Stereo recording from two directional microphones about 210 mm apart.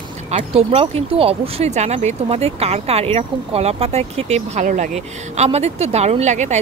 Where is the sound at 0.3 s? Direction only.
30° right (ahead or behind).